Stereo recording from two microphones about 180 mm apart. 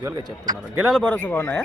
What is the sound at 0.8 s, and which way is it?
Speech, 5° left (ahead or behind).